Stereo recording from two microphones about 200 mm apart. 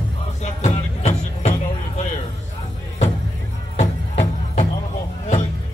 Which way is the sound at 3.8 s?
35° left (ahead or behind).